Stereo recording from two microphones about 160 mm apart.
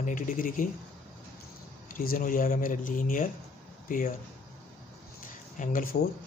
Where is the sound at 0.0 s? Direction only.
55° left (ahead or behind).